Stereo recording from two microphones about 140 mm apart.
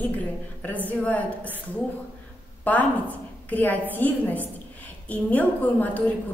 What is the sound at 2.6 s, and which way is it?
A woman's voice, 10° left (ahead or behind).